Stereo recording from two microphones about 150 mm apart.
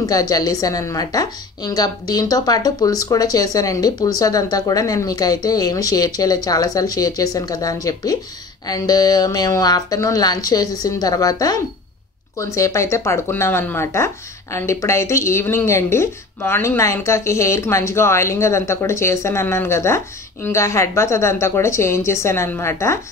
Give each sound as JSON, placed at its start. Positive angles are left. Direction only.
{"t": 0.0, "sound": "a woman's voice", "side_deg": 25}
{"t": 12.5, "sound": "a woman's voice", "side_deg": 20}